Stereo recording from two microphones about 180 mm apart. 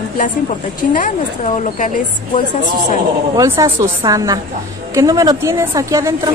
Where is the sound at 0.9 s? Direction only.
50° left (ahead or behind).